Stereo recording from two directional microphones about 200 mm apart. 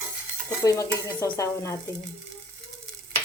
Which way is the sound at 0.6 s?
15° left (ahead or behind).